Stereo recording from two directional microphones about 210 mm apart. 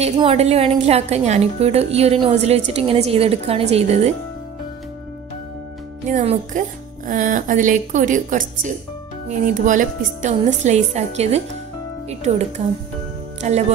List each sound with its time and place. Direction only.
0.0 s a woman's voice: 30° right (ahead or behind)
6.0 s a woman's voice: 35° right (ahead or behind)